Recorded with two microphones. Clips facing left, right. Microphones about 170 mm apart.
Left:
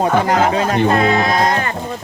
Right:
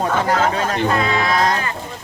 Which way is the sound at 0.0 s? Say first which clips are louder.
Left 3 dB; 15° left (ahead or behind).